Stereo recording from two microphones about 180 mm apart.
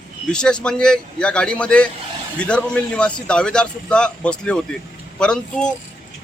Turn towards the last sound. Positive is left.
turn(degrees=5)  # may be behind; listen again after turning